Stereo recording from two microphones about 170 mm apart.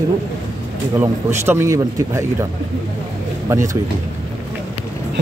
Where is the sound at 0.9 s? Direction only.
15° right (ahead or behind).